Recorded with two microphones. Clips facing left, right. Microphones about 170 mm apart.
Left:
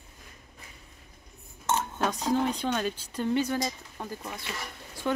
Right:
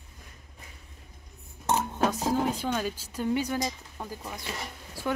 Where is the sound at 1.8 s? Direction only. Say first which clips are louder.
Right 3 dB; 5° right (ahead or behind).